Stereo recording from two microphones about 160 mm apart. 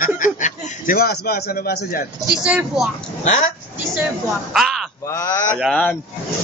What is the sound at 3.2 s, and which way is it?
Speech, 50° left (ahead or behind).